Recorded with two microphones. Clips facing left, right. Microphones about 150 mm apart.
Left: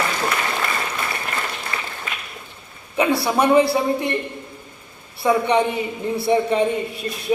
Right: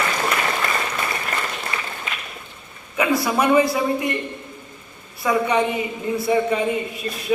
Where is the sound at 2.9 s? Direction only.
30° left (ahead or behind).